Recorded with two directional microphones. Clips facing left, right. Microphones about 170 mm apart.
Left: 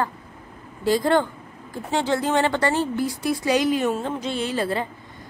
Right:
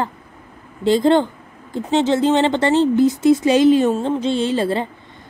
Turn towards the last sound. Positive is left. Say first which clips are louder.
# right 6 dB
turn(degrees=-25)  # may be behind; listen again after turning